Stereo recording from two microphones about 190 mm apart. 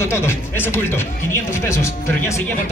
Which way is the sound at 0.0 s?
15° left (ahead or behind).